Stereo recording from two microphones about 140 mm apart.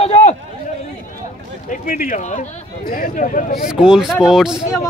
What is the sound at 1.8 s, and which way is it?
Speech, 70° left (ahead or behind).